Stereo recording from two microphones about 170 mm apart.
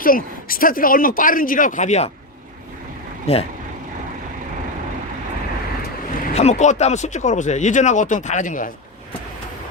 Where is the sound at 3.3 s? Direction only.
35° left (ahead or behind).